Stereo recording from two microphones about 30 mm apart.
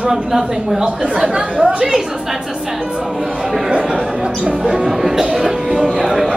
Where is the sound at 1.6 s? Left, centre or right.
Centre.